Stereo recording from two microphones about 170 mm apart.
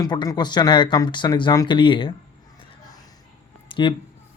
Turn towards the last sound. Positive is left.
turn(degrees=30)  # may be behind; listen again after turning